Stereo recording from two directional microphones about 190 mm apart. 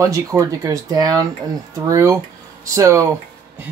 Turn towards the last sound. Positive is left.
turn(degrees=-15)  # may be behind; listen again after turning